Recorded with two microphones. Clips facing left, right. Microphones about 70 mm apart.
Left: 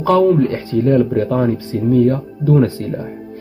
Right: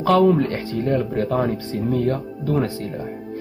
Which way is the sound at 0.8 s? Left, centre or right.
Left.